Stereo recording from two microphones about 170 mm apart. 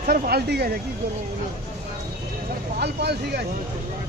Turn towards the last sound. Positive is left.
turn(degrees=-75)  # may be behind; listen again after turning